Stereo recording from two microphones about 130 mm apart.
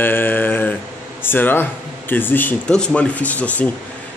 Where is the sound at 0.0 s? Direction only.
15° left (ahead or behind).